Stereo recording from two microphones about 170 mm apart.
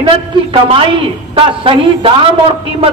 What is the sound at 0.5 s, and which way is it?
A man's voice, 30° right (ahead or behind).